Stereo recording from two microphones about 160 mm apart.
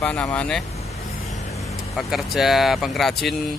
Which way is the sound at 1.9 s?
Centre (ahead or behind).